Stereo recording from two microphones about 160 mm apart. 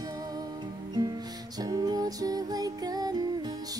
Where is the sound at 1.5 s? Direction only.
25° right (ahead or behind).